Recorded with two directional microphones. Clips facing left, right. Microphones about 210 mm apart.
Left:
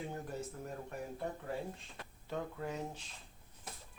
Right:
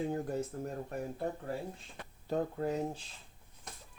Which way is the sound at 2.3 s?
40° right (ahead or behind).